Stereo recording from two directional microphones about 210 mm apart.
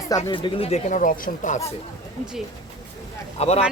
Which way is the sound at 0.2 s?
25° left (ahead or behind).